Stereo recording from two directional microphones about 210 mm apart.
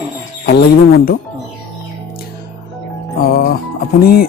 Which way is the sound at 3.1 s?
45° left (ahead or behind).